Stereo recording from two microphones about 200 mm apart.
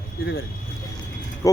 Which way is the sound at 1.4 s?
15° left (ahead or behind).